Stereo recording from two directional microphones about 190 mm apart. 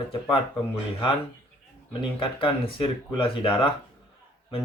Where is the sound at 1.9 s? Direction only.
25° left (ahead or behind).